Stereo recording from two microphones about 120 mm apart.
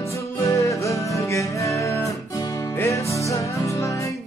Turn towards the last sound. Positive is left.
turn(degrees=25)  # may be behind; listen again after turning